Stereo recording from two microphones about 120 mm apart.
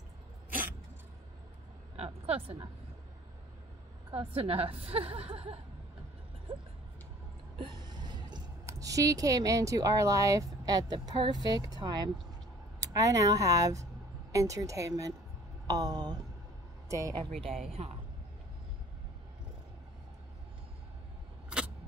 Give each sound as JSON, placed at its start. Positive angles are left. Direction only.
{"t": 0.5, "sound": "vehicle", "side_deg": -15}
{"t": 2.0, "sound": "a woman's voice", "side_deg": -55}
{"t": 4.1, "sound": "a woman's voice", "side_deg": -50}
{"t": 7.5, "sound": "a sound", "side_deg": -40}
{"t": 8.6, "sound": "speech", "side_deg": -30}
{"t": 17.1, "sound": "a woman's voice", "side_deg": -50}